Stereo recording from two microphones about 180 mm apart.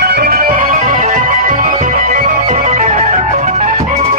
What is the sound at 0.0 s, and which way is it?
Music, 60° right (ahead or behind).